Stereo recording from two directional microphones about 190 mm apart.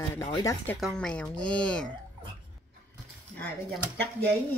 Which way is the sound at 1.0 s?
5° left (ahead or behind).